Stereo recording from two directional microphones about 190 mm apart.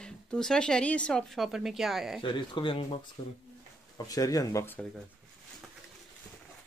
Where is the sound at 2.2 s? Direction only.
25° left (ahead or behind).